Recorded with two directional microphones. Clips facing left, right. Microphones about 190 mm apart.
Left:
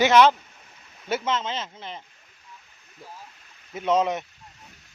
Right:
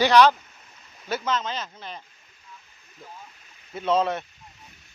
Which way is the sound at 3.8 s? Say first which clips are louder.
Left 1 dB; 15° left (ahead or behind).